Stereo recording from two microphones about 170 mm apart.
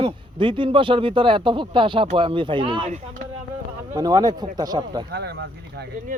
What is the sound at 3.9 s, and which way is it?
A man's voice, 20° right (ahead or behind).